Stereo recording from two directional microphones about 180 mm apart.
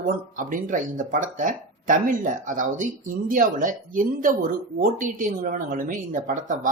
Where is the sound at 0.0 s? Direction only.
50° right (ahead or behind).